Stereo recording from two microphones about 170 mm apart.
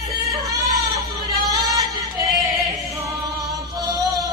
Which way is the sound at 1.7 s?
20° right (ahead or behind).